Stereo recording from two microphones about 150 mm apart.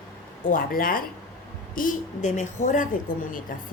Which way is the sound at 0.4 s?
70° left (ahead or behind).